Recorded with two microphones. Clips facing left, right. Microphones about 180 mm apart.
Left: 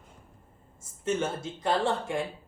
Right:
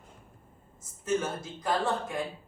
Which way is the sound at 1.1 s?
25° left (ahead or behind).